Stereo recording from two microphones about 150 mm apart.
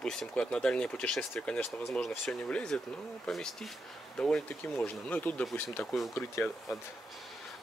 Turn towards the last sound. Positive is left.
turn(degrees=15)  # may be behind; listen again after turning